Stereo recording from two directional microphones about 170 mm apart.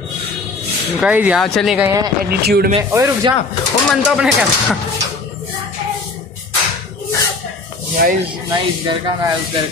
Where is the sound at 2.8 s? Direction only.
20° right (ahead or behind).